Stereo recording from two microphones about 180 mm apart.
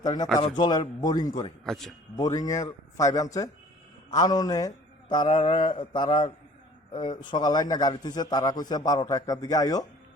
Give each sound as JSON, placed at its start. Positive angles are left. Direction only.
{"t": 0.0, "sound": "a man's voice", "side_deg": 25}
{"t": 1.6, "sound": "a man's voice", "side_deg": 0}
{"t": 2.1, "sound": "a man's voice", "side_deg": 20}